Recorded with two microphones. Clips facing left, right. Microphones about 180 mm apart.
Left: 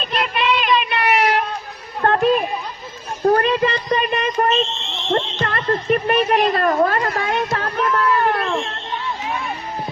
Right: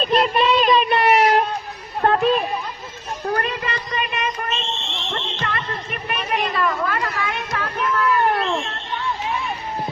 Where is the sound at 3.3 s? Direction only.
25° left (ahead or behind).